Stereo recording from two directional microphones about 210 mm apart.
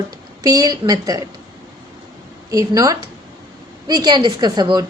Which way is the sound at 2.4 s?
15° right (ahead or behind).